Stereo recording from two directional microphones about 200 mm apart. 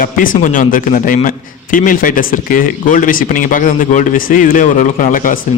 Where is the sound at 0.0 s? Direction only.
45° left (ahead or behind).